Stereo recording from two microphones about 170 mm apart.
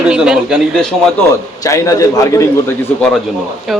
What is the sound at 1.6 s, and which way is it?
Speech, 20° left (ahead or behind).